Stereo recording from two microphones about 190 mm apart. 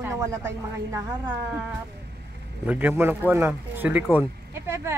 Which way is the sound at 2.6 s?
10° right (ahead or behind).